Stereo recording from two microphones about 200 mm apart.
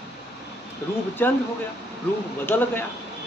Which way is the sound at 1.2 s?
10° left (ahead or behind).